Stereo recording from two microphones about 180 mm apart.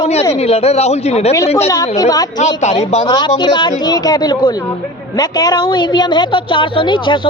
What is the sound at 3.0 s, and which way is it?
A man's voice, 25° left (ahead or behind).